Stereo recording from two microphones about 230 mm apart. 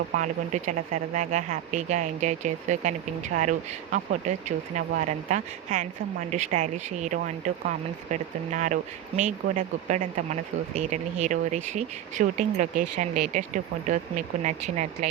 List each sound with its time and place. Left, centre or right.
0.2 s speech: right
3.9 s speech: right